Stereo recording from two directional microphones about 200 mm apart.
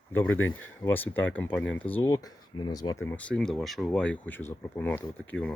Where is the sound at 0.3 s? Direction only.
80° left.